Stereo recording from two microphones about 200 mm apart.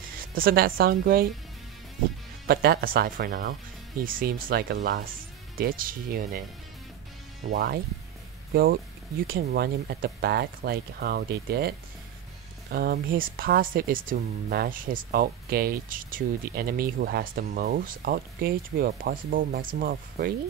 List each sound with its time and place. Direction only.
0.3 s speech: 45° right (ahead or behind)
2.4 s speech: 50° right (ahead or behind)
7.5 s speech: 50° right (ahead or behind)
9.3 s speech: 50° right (ahead or behind)
12.7 s speech: 50° right (ahead or behind)